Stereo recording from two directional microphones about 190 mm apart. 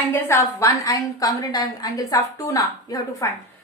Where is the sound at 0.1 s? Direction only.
15° left (ahead or behind).